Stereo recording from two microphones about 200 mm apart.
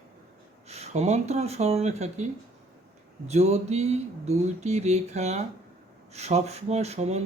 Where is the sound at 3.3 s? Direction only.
35° right (ahead or behind).